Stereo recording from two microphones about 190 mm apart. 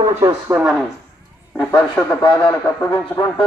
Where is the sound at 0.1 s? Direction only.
15° right (ahead or behind).